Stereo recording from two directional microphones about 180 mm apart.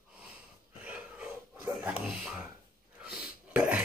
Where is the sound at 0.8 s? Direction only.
5° right (ahead or behind).